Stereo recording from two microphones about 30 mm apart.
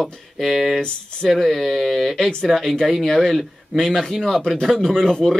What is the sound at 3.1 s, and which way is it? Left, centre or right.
A man's voice, centre.